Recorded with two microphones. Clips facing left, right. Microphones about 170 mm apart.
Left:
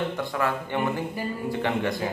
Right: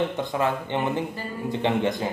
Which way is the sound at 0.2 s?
20° right (ahead or behind).